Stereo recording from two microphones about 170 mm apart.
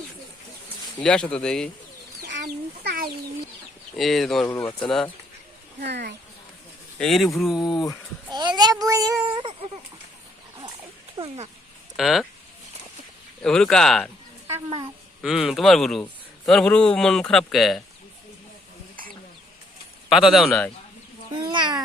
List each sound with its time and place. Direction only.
0.9 s a man's voice: 5° left (ahead or behind)
2.8 s a sound: 60° right (ahead or behind)
3.9 s a man's voice: centre (ahead or behind)
5.8 s speech: 80° right
7.0 s a man's voice: centre (ahead or behind)
8.3 s a child's voice: 25° right (ahead or behind)
9.2 s baby cry: 30° right (ahead or behind)
11.2 s speech: 35° right (ahead or behind)
11.9 s a man's voice: centre (ahead or behind)
13.4 s a man's voice: 5° left (ahead or behind)
15.2 s a man's voice: centre (ahead or behind)
20.1 s a man's voice: centre (ahead or behind)
21.3 s babbling: 25° right (ahead or behind)